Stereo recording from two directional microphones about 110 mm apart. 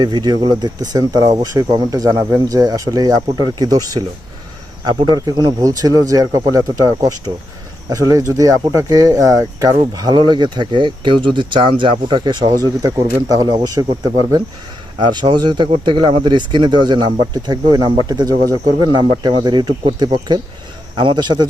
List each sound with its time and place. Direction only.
0.0 s speech: 40° right (ahead or behind)
14.9 s speech: 45° right (ahead or behind)